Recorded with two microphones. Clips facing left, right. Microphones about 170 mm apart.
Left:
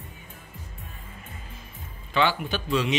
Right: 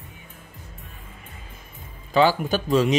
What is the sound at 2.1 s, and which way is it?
Speech, 40° right (ahead or behind).